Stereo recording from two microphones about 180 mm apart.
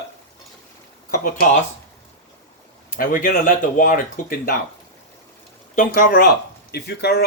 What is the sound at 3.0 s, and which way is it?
Speech, 50° left (ahead or behind).